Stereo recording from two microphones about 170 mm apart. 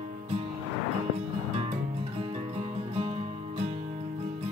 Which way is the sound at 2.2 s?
35° right (ahead or behind).